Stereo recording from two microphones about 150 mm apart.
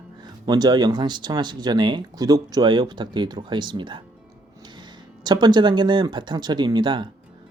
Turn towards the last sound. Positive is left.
turn(degrees=-30)  # may be behind; listen again after turning